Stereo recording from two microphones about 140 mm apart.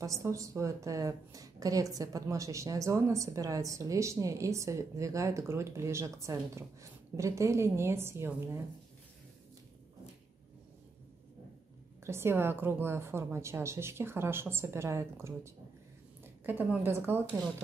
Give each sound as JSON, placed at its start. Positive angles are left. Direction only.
{"t": 0.0, "sound": "a woman's voice", "side_deg": -20}
{"t": 12.0, "sound": "a woman's voice", "side_deg": -20}